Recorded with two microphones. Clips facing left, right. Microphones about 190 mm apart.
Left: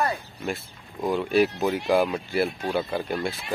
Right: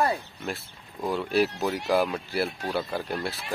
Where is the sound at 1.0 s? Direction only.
Centre (ahead or behind).